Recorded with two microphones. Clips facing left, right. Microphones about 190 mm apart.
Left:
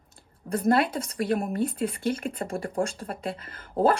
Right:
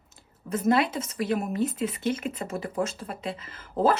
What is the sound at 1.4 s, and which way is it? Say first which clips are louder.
Speech: even; 50° left (ahead or behind).